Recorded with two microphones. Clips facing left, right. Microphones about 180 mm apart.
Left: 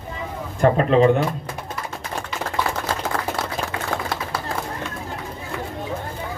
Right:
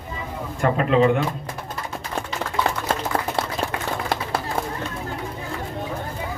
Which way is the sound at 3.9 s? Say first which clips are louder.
Left 2 dB; 90° left.